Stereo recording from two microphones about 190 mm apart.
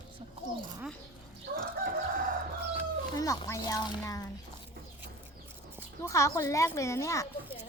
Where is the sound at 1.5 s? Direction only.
55° right (ahead or behind).